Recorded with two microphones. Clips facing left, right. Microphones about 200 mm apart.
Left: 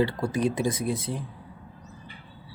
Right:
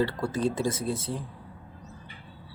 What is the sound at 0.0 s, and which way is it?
Speech, 15° left (ahead or behind).